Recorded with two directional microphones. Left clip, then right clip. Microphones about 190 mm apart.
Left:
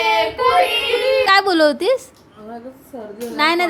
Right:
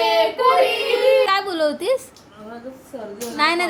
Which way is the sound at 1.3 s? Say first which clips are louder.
Left 6 dB; 25° left (ahead or behind).